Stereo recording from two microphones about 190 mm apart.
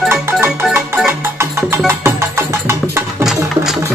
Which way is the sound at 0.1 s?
10° right (ahead or behind).